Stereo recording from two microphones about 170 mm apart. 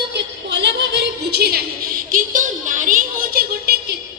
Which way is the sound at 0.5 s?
90° right.